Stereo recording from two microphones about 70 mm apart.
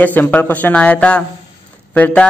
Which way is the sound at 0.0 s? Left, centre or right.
Left.